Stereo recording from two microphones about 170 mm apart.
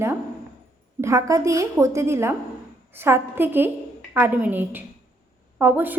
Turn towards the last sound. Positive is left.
turn(degrees=-10)  # may be behind; listen again after turning